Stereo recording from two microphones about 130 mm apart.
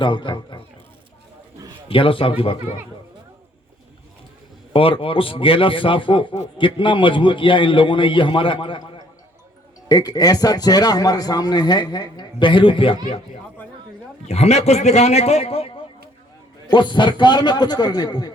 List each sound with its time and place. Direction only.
0.0 s a man's voice: 40° left (ahead or behind)
1.9 s speech: 45° left (ahead or behind)
4.7 s a man's voice: 45° left (ahead or behind)
14.3 s a man's voice: 55° left (ahead or behind); by 18.3 s 30° left (ahead or behind)